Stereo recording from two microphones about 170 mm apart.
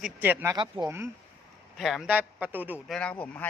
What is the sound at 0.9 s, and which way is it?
Speech, 15° right (ahead or behind).